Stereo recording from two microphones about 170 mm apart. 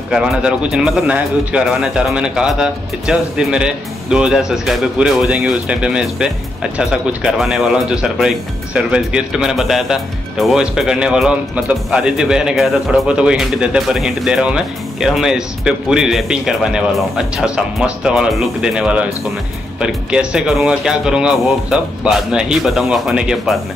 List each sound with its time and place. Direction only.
0.1 s speech: 5° right (ahead or behind)